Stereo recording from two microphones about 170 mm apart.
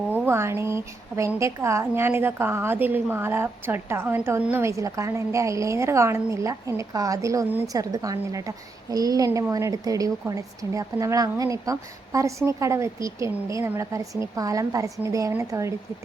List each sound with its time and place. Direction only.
0.1 s a woman's voice: 15° right (ahead or behind)